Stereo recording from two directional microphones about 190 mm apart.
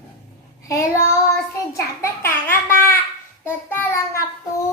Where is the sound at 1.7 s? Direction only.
15° left (ahead or behind).